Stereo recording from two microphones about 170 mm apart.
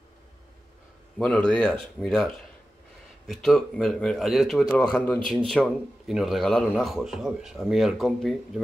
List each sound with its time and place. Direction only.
1.1 s a man's voice: 5° left (ahead or behind)